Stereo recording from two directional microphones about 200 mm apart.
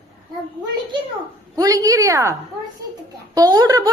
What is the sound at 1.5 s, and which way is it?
Speech, 15° right (ahead or behind).